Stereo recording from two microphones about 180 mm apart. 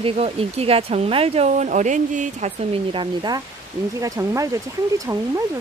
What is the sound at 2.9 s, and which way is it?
Speech, 25° right (ahead or behind).